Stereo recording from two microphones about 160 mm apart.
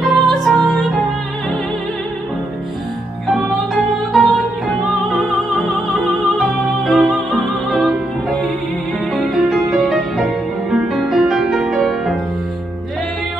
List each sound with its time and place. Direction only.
0.0 s music: centre (ahead or behind)
3.3 s music: centre (ahead or behind)